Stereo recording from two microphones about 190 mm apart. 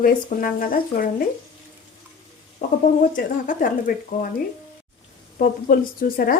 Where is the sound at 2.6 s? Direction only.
50° left (ahead or behind).